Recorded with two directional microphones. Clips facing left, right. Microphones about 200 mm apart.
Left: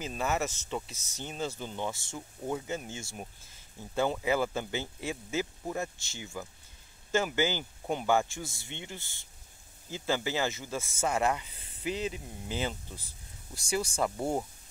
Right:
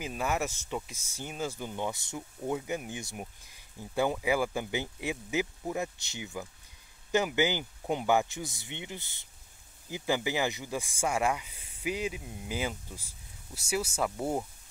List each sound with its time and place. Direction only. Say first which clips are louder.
0.0 s speech: even; 10° right (ahead or behind)